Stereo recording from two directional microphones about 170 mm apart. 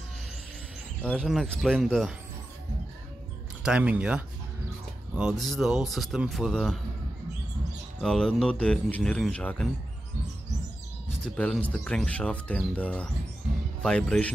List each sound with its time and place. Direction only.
1.0 s speech: 5° left (ahead or behind)
3.6 s speech: 5° right (ahead or behind)
8.0 s speech: 5° left (ahead or behind)
11.2 s speech: 5° left (ahead or behind)